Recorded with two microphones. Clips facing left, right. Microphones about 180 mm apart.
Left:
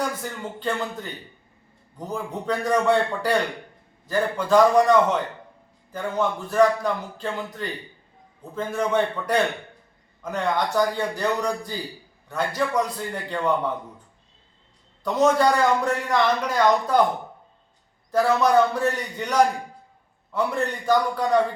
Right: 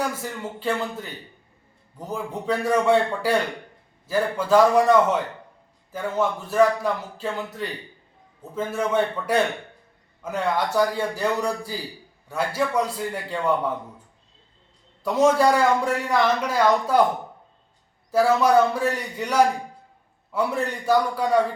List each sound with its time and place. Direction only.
0.2 s speech: 5° right (ahead or behind)
2.0 s a man's voice: 5° right (ahead or behind)
15.0 s a man's voice: 10° right (ahead or behind)
18.1 s a man's voice: 5° right (ahead or behind)